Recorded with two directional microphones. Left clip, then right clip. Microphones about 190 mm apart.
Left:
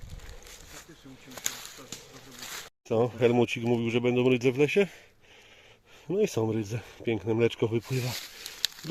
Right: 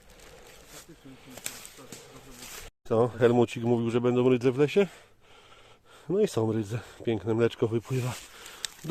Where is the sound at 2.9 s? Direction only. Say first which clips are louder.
Right 1 dB; 5° right (ahead or behind).